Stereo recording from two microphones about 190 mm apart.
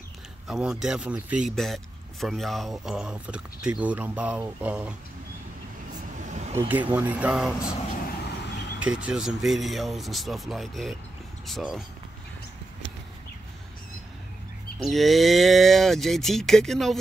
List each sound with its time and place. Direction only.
0.5 s speech: 5° right (ahead or behind)
6.1 s a sound: 40° right (ahead or behind)
6.7 s speech: 10° right (ahead or behind)
8.7 s speech: 5° right (ahead or behind)
14.9 s speech: centre (ahead or behind)